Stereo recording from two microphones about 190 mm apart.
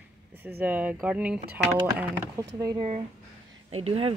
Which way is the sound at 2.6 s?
25° right (ahead or behind).